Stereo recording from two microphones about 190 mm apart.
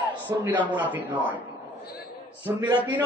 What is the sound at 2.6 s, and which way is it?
Speech, 15° right (ahead or behind).